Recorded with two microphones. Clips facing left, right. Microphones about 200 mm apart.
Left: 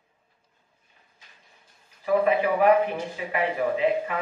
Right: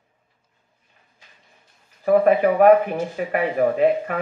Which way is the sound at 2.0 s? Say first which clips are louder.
Right 6 dB; 50° right (ahead or behind).